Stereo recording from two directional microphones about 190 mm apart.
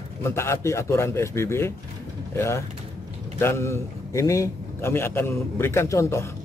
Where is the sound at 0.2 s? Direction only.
15° left (ahead or behind).